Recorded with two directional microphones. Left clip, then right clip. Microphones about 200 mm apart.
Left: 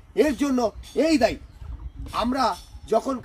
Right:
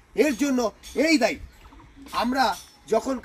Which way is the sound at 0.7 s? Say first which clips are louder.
Even; 20° left (ahead or behind).